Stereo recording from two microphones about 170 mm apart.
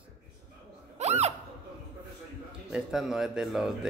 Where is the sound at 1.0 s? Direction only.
40° right (ahead or behind).